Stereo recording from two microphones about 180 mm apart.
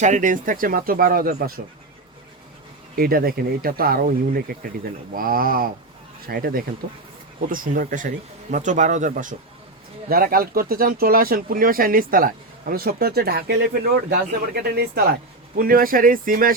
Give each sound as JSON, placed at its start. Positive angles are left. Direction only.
{"t": 0.0, "sound": "speech", "side_deg": -45}
{"t": 2.9, "sound": "speech", "side_deg": -55}
{"t": 10.1, "sound": "speech", "side_deg": -55}